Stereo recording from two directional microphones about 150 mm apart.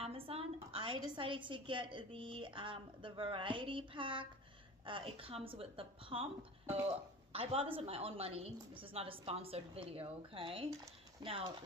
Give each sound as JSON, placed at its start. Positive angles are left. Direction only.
{"t": 0.0, "sound": "a woman's voice", "side_deg": -40}